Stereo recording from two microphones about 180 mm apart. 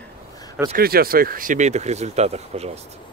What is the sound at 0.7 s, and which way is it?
Speech, 55° right (ahead or behind).